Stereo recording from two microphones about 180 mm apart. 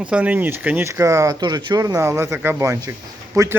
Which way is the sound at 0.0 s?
10° right (ahead or behind).